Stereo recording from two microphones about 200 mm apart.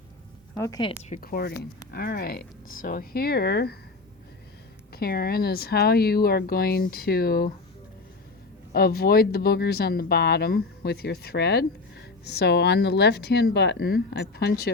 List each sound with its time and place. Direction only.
0.5 s a woman's voice: 15° left (ahead or behind)
1.1 s speech: 45° left (ahead or behind)
4.9 s speech: 50° left (ahead or behind)
8.7 s speech: 50° left (ahead or behind)